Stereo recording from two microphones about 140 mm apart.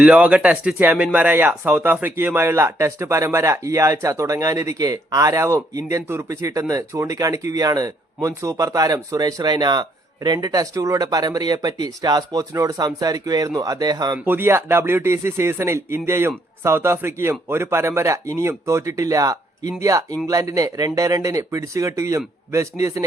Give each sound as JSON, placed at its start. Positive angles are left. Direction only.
{"t": 0.0, "sound": "speech", "side_deg": -10}
{"t": 14.3, "sound": "speech", "side_deg": -15}